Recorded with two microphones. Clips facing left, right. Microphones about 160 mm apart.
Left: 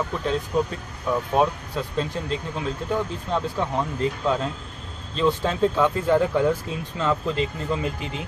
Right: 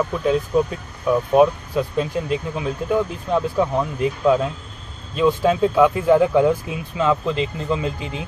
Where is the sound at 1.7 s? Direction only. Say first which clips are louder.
Right 5 dB; 15° right (ahead or behind).